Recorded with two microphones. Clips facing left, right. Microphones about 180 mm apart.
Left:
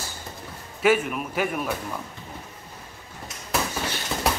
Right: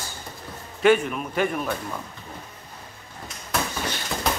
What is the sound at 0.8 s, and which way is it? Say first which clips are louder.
Speech: right 2 dB; 5° left (ahead or behind).